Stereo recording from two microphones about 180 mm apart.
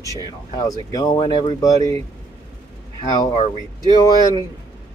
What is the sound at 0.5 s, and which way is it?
Speech, 20° left (ahead or behind).